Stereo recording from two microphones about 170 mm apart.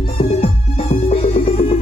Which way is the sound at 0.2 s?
35° left (ahead or behind).